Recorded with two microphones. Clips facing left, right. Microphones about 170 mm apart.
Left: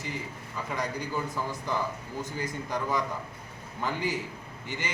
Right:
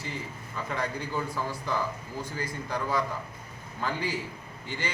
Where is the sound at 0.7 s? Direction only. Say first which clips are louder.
Even; 10° left (ahead or behind).